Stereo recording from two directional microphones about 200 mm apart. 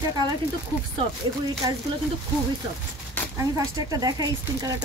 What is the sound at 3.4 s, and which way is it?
Speech, 15° right (ahead or behind).